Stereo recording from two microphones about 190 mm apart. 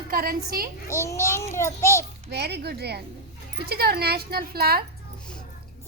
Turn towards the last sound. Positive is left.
turn(degrees=-55)  # may be behind; listen again after turning